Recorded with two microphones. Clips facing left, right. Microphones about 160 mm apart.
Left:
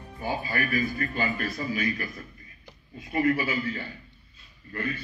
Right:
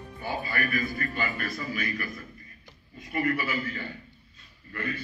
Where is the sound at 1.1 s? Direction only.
35° left (ahead or behind).